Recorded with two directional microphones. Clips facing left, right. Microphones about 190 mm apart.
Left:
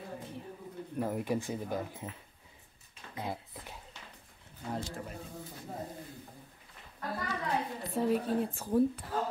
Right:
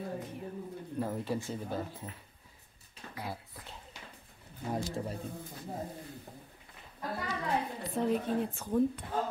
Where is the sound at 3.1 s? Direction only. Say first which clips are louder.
Left 3 dB; 20° left (ahead or behind).